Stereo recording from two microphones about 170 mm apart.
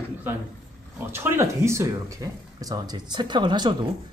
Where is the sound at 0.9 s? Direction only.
15° right (ahead or behind).